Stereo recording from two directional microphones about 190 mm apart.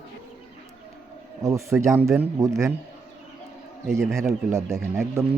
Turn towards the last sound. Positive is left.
turn(degrees=-15)  # may be behind; listen again after turning